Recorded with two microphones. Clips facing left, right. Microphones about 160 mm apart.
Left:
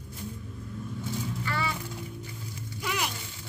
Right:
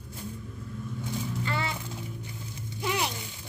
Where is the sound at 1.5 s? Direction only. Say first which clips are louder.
Left 1 dB; 20° right (ahead or behind).